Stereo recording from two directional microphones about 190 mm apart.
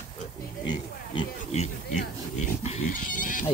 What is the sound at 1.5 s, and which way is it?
Goat, 40° left (ahead or behind).